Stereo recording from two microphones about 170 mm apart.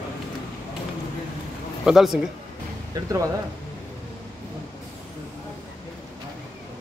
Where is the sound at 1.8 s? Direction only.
Centre (ahead or behind).